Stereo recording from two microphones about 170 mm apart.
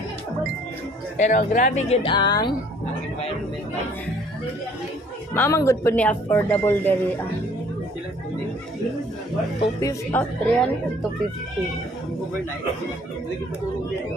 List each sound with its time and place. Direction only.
1.1 s speech: 45° left (ahead or behind)
2.0 s speech: 25° left (ahead or behind)
5.3 s speech: 15° left (ahead or behind)
9.6 s speech: 20° left (ahead or behind)